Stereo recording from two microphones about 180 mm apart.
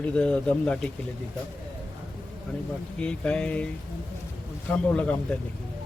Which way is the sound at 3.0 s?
5° left (ahead or behind).